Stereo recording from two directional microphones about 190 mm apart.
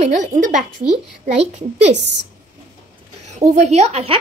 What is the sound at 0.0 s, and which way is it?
A woman's voice, 40° right (ahead or behind).